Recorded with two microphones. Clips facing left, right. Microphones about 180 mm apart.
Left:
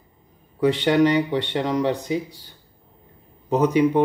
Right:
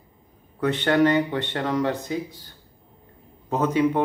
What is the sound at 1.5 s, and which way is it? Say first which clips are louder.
Speech: left 2 dB; 15° left (ahead or behind).